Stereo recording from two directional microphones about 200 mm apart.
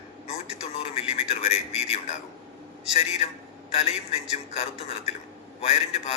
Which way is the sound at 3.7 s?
30° left (ahead or behind).